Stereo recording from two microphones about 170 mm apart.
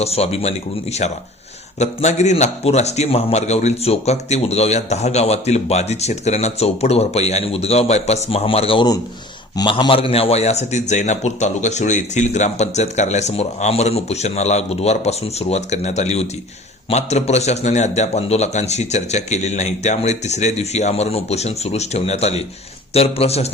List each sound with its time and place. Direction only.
0.0 s a man's voice: 35° left (ahead or behind)